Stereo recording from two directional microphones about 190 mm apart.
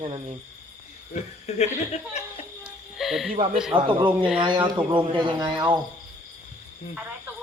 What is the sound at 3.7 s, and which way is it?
Speech, 25° right (ahead or behind).